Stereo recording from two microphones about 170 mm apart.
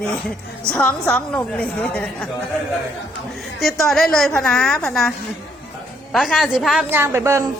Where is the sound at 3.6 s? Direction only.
Centre (ahead or behind).